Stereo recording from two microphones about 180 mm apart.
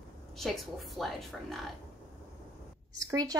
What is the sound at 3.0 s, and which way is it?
Speech, 20° right (ahead or behind).